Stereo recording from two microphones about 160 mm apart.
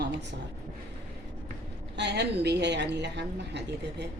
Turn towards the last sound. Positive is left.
turn(degrees=-90)